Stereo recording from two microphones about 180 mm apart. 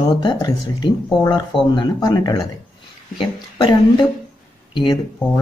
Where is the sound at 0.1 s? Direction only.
25° left (ahead or behind).